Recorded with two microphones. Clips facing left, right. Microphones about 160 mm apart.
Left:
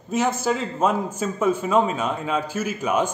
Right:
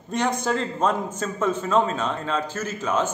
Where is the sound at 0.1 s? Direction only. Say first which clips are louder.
Left 2 dB; 5° left (ahead or behind).